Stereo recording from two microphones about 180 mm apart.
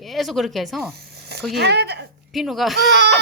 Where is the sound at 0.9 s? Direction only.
65° right (ahead or behind).